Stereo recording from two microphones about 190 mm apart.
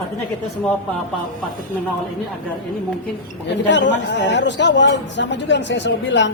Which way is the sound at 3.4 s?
70° left (ahead or behind).